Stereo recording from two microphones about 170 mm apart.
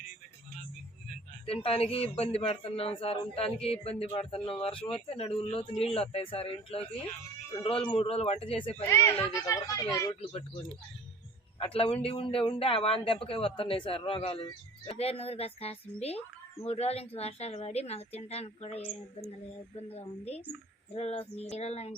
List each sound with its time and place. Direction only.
1.5 s a man's voice: 35° left (ahead or behind)
8.9 s a woman's voice: 15° left (ahead or behind)
10.1 s a man's voice: 35° left (ahead or behind)
11.6 s a man's voice: 35° left (ahead or behind)